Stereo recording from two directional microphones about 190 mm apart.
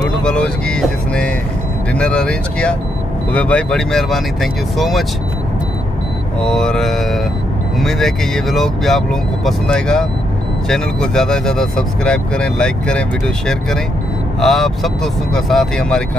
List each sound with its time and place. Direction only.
0.2 s speech: 5° left (ahead or behind)
6.4 s mantra: 5° left (ahead or behind)
7.8 s speech: centre (ahead or behind)
14.4 s speech: centre (ahead or behind)